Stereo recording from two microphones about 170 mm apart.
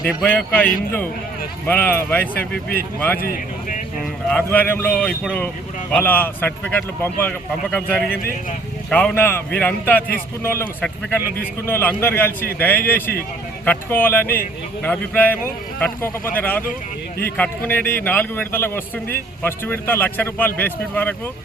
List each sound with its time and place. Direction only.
0.2 s speech: 10° left (ahead or behind)
3.2 s speech: 60° left (ahead or behind)
4.3 s speech: 10° left (ahead or behind)